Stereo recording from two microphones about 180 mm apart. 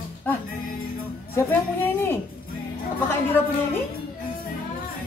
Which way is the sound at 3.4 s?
10° left (ahead or behind).